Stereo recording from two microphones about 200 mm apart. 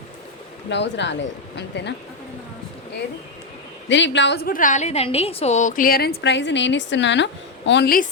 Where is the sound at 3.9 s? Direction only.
65° left (ahead or behind).